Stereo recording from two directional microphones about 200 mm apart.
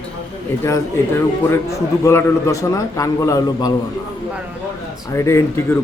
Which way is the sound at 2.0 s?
15° left (ahead or behind).